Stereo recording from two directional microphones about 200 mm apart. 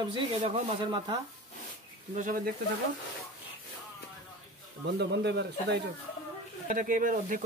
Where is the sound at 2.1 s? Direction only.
45° right (ahead or behind).